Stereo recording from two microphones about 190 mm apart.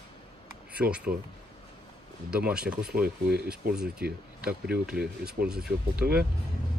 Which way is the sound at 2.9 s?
55° right (ahead or behind).